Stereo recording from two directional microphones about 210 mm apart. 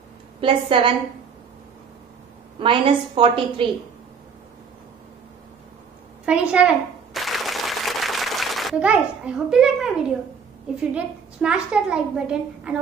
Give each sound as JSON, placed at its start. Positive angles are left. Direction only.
{"t": 0.4, "sound": "a woman's voice", "side_deg": -25}
{"t": 2.6, "sound": "a woman's voice", "side_deg": -25}
{"t": 6.2, "sound": "a woman's voice", "side_deg": -5}
{"t": 7.2, "sound": "a sound", "side_deg": 0}
{"t": 10.8, "sound": "a woman's voice", "side_deg": -5}